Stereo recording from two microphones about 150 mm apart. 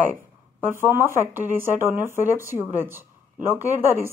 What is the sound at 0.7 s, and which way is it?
Speech, 15° right (ahead or behind).